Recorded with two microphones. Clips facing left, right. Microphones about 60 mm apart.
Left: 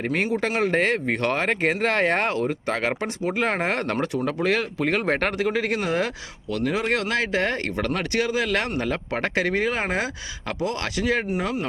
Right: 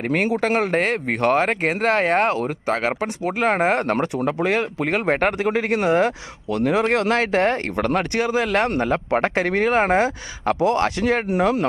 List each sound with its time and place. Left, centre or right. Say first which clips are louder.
0.1 s speech: right 6 dB; right
0.7 s speech: right 1 dB; centre; by 6.1 s right
6.7 s speech: right 6 dB; right
11.3 s speech: right 7 dB; right